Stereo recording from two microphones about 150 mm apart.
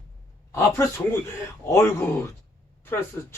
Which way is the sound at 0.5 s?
15° left (ahead or behind).